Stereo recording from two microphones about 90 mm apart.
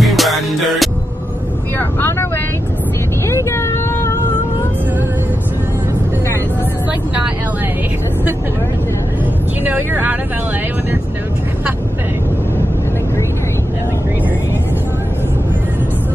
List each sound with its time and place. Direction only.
0.0 s music: centre (ahead or behind)
1.8 s vehicle: 25° left (ahead or behind)
9.7 s vehicle: 20° right (ahead or behind)